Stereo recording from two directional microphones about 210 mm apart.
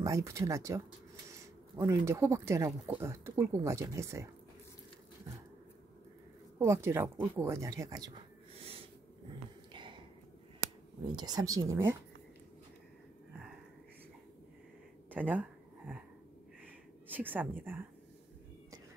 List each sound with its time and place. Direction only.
0.0 s speech: 15° right (ahead or behind)
6.6 s speech: 10° right (ahead or behind)
9.7 s a sound: 25° right (ahead or behind)
11.1 s speech: 20° right (ahead or behind)
15.0 s a sound: 10° right (ahead or behind)
17.1 s speech: 10° right (ahead or behind)